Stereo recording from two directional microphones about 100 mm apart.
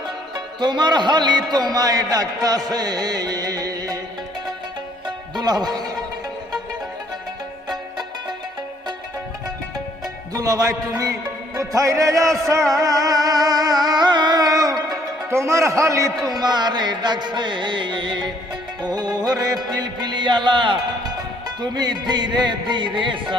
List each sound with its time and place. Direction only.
0.6 s a man's voice: 45° right (ahead or behind)
5.4 s speech: 40° right (ahead or behind)
10.3 s a man's voice: 35° right (ahead or behind)
12.8 s music: 35° right (ahead or behind)
15.3 s a man's voice: 30° right (ahead or behind)
16.4 s music: 45° right (ahead or behind)